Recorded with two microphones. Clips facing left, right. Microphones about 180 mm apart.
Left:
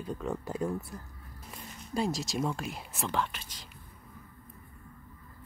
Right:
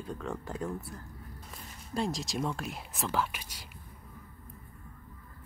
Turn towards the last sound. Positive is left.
turn(degrees=-10)  # may be behind; listen again after turning